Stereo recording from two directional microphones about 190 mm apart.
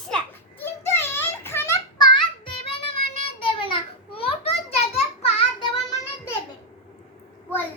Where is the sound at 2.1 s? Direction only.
25° left (ahead or behind).